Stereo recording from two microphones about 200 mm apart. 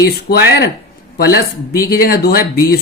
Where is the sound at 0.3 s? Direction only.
50° left (ahead or behind).